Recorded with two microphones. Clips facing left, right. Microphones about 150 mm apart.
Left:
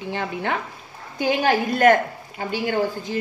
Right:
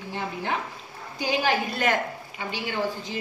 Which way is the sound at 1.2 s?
50° left (ahead or behind).